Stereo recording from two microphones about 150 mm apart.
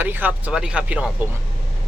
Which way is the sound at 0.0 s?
10° right (ahead or behind).